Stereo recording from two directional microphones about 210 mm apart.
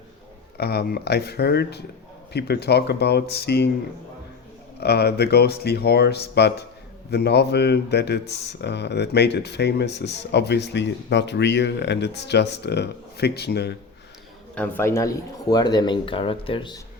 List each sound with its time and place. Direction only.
0.5 s speech: 50° left (ahead or behind)
4.8 s speech: 50° left (ahead or behind)
14.5 s speech: 10° left (ahead or behind)